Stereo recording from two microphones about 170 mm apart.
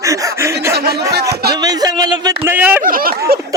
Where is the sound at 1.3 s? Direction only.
70° right (ahead or behind).